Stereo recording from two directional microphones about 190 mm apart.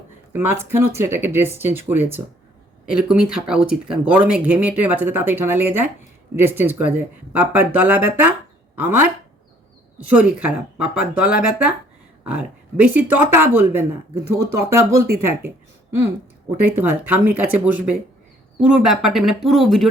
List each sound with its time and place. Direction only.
0.3 s speech: 10° right (ahead or behind)
10.1 s speech: 5° right (ahead or behind)
16.6 s speech: 10° right (ahead or behind)